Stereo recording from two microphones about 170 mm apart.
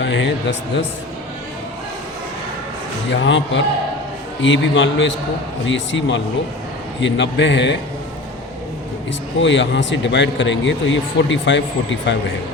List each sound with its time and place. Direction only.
0.0 s speech: 90° left
3.1 s a man's voice: 90° left
9.4 s a man's voice: 90° left